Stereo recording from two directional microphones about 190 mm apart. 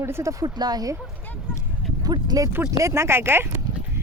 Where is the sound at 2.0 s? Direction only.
20° right (ahead or behind).